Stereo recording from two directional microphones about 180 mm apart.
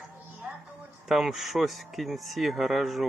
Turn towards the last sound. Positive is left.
turn(degrees=0)  # may be behind; listen again after turning